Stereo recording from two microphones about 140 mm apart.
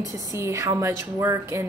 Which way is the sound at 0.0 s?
20° right (ahead or behind).